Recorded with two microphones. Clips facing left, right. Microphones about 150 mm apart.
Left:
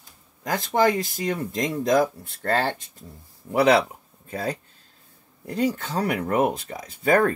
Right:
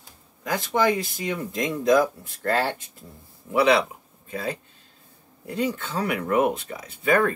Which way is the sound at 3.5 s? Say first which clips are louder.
Left 1 dB; 40° left (ahead or behind).